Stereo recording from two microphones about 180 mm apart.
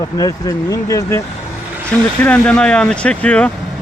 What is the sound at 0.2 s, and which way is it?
Speech, 20° left (ahead or behind).